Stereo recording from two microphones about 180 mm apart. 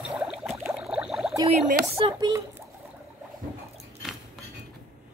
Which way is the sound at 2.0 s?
25° right (ahead or behind).